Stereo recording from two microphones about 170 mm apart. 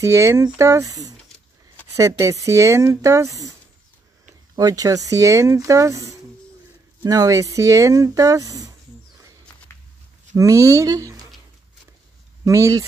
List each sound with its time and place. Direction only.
0.0 s speech: 15° right (ahead or behind)
4.6 s speech: 20° right (ahead or behind)
10.3 s speech: 20° right (ahead or behind)
12.4 s speech: 20° right (ahead or behind)